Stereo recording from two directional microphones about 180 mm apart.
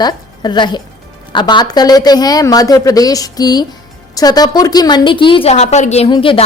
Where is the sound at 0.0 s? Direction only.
25° left (ahead or behind).